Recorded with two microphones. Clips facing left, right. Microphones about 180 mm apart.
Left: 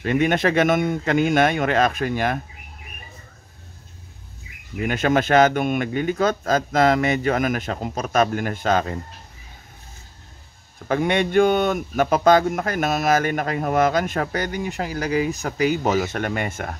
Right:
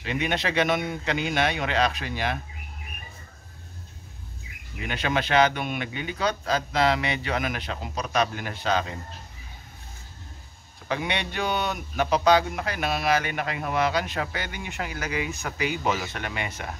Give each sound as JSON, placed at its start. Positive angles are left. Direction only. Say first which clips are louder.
{"t": 0.0, "sound": "speech", "louder": "left 8 dB", "side_deg": 50}
{"t": 4.8, "sound": "speech", "louder": "left 7 dB", "side_deg": 45}
{"t": 10.9, "sound": "speech", "louder": "left 9 dB", "side_deg": 50}